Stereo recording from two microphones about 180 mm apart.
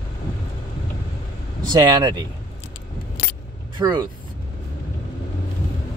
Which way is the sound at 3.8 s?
25° right (ahead or behind).